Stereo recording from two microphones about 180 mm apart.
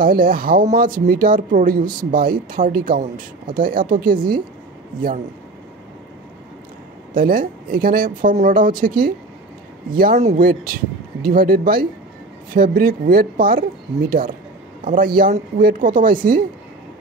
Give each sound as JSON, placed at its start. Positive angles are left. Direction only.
{"t": 0.0, "sound": "speech", "side_deg": -55}
{"t": 7.2, "sound": "speech", "side_deg": -55}
{"t": 14.9, "sound": "speech", "side_deg": -55}